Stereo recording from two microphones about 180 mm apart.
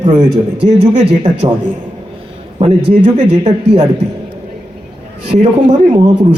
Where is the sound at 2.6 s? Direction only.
35° right (ahead or behind).